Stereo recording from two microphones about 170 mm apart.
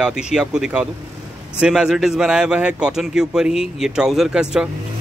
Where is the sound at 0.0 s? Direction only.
5° right (ahead or behind).